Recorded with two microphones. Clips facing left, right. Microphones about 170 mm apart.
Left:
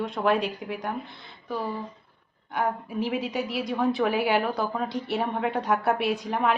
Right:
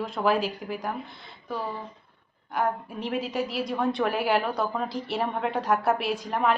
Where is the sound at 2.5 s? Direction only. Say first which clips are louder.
Even; centre (ahead or behind).